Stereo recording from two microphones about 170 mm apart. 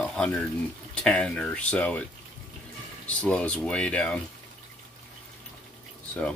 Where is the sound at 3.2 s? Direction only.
5° left (ahead or behind).